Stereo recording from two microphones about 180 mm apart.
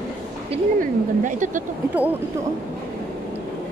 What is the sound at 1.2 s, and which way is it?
Speech, 45° right (ahead or behind).